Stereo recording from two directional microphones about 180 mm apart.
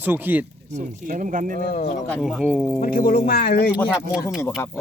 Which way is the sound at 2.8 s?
50° left (ahead or behind).